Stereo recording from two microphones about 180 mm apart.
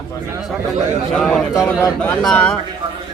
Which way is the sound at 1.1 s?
5° left (ahead or behind).